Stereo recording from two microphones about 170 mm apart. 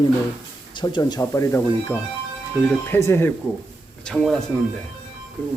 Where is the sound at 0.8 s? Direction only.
25° left (ahead or behind).